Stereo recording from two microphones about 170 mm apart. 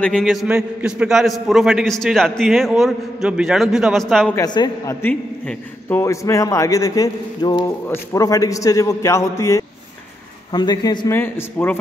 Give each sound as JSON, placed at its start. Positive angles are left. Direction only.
{"t": 0.0, "sound": "a man's voice", "side_deg": 0}
{"t": 4.4, "sound": "a man's voice", "side_deg": 20}
{"t": 11.1, "sound": "a man's voice", "side_deg": 15}